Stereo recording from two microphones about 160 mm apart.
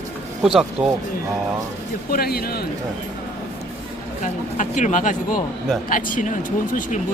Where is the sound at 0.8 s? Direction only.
5° right (ahead or behind).